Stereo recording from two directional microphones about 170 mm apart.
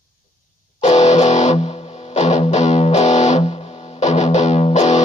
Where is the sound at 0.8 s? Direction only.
45° left (ahead or behind).